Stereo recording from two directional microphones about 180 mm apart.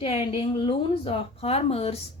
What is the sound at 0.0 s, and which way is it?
A woman's voice, 30° left (ahead or behind).